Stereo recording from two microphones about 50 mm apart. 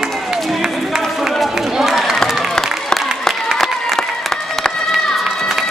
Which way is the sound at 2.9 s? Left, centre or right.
Centre.